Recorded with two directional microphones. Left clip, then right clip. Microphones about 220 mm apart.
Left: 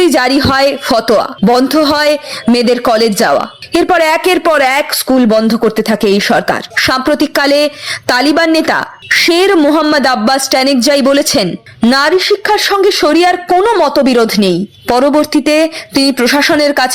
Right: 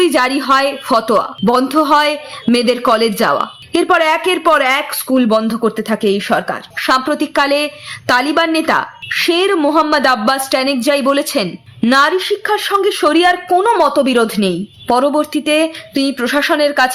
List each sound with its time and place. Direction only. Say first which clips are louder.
0.0 s speech: left 4 dB; 30° left (ahead or behind)